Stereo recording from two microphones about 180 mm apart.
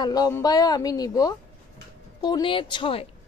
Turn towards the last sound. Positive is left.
turn(degrees=30)  # may be behind; listen again after turning